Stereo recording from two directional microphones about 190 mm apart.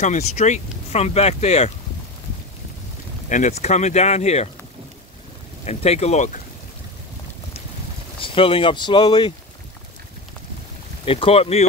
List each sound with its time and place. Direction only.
0.0 s speech: 35° left (ahead or behind)
3.3 s speech: 40° left (ahead or behind)
5.7 s speech: 35° left (ahead or behind)
8.2 s speech: 30° left (ahead or behind)
11.1 s speech: 30° left (ahead or behind)